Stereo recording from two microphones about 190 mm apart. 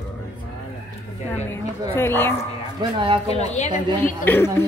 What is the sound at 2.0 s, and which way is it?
Speech, 10° left (ahead or behind).